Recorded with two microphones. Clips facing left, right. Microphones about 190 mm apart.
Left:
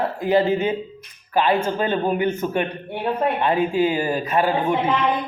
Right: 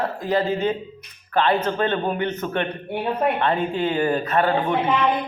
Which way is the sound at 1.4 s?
10° left (ahead or behind).